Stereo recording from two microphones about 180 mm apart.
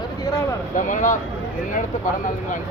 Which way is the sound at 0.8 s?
45° left (ahead or behind).